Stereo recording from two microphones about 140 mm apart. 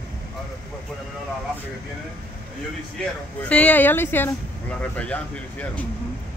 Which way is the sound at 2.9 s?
10° left (ahead or behind).